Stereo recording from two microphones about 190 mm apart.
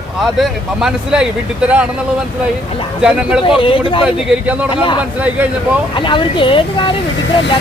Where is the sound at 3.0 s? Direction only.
5° right (ahead or behind).